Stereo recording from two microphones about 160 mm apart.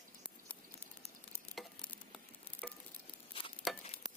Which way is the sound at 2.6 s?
5° left (ahead or behind).